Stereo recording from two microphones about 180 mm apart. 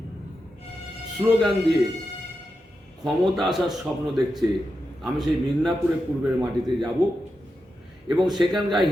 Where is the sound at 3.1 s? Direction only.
Centre (ahead or behind).